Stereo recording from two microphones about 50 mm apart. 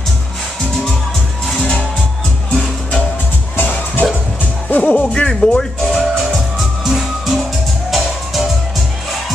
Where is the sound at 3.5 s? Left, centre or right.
Left.